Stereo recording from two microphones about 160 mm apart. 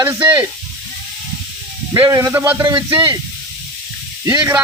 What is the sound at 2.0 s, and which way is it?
Speech, 20° right (ahead or behind).